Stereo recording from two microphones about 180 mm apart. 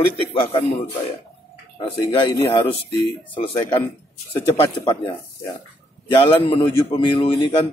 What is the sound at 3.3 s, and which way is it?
A man's voice, 30° left (ahead or behind).